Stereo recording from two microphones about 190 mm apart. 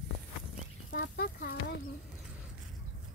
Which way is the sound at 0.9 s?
55° left (ahead or behind).